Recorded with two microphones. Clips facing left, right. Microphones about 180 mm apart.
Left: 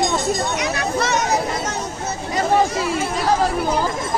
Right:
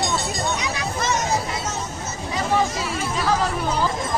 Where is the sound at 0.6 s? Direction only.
65° left (ahead or behind).